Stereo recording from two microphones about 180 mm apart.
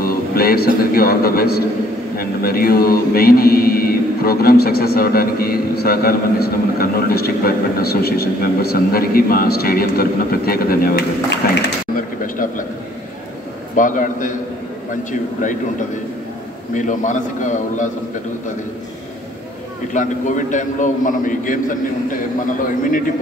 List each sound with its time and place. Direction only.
0.0 s a man's voice: 55° left (ahead or behind)
13.7 s a man's voice: 45° left (ahead or behind)
16.7 s a man's voice: 45° left (ahead or behind)
19.9 s a man's voice: 45° left (ahead or behind)